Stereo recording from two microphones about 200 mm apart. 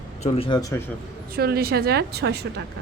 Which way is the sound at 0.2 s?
30° left (ahead or behind).